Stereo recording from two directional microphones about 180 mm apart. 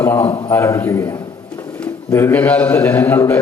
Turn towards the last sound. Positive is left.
turn(degrees=15)  # may be behind; listen again after turning